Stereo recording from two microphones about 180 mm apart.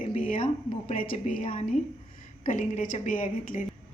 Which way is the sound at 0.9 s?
50° left (ahead or behind).